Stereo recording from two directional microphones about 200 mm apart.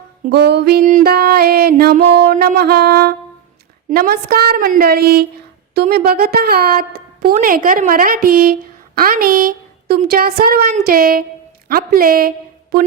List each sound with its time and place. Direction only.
0.3 s speech: 55° right (ahead or behind)
2.0 s a sound: 30° right (ahead or behind)
2.2 s speech: 45° right (ahead or behind)